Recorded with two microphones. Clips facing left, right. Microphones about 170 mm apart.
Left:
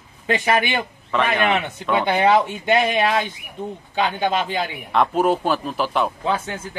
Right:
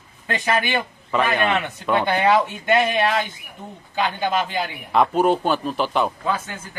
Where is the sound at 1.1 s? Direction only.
Centre (ahead or behind).